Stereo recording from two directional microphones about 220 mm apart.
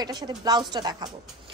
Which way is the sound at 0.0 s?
20° right (ahead or behind).